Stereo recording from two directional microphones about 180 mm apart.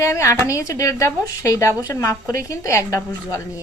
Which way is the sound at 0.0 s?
15° left (ahead or behind).